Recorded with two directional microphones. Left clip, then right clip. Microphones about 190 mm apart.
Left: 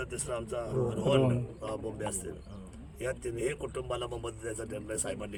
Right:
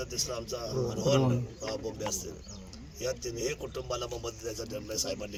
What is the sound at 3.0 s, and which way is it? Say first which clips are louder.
Speech: even; 30° left (ahead or behind).